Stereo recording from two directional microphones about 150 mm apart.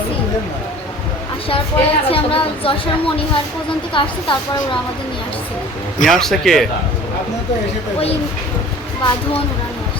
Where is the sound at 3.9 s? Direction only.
35° left (ahead or behind).